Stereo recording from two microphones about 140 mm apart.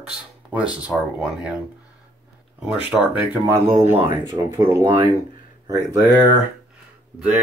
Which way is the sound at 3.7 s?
50° right (ahead or behind).